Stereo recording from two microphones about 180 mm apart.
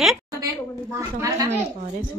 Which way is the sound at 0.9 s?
20° right (ahead or behind).